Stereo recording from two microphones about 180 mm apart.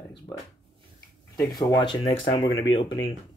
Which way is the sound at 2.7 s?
90° left.